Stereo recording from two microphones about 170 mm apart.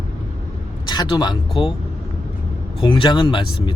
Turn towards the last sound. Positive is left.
turn(degrees=30)  # may be behind; listen again after turning